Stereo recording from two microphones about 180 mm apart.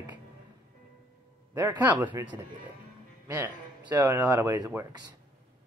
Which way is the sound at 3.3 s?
10° right (ahead or behind).